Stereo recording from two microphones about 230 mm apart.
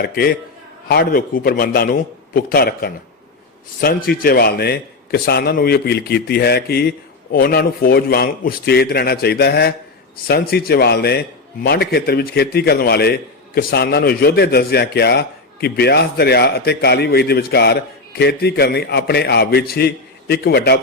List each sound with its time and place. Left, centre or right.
0.0 s a man's voice: left